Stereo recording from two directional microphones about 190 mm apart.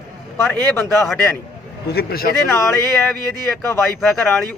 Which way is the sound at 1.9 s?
55° left (ahead or behind).